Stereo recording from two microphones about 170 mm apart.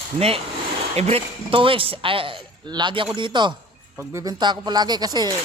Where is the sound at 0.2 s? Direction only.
35° right (ahead or behind).